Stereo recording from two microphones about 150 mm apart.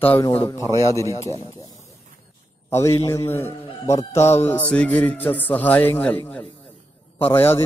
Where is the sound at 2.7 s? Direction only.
20° left (ahead or behind).